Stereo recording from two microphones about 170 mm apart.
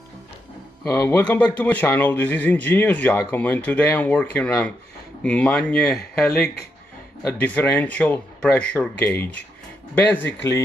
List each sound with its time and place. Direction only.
0.8 s a man's voice: 15° left (ahead or behind)